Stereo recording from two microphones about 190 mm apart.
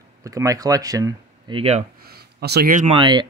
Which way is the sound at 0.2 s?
15° right (ahead or behind).